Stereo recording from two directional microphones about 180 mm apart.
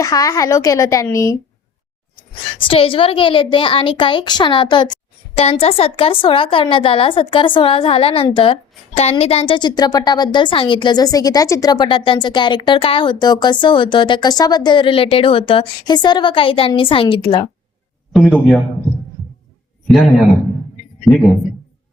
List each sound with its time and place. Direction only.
0.0 s a woman's voice: 20° left (ahead or behind)
2.6 s a woman's voice: 30° left (ahead or behind)
18.1 s a man's voice: centre (ahead or behind)
19.9 s a man's voice: centre (ahead or behind)